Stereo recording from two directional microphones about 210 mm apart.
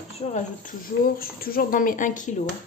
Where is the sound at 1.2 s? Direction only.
45° left (ahead or behind).